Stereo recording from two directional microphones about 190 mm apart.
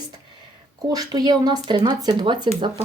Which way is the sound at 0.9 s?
20° right (ahead or behind).